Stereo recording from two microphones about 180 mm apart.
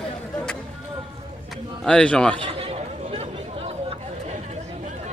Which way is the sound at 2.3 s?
30° right (ahead or behind).